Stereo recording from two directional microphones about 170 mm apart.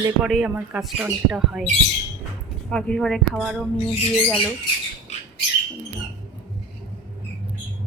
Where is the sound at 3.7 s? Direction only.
35° left (ahead or behind).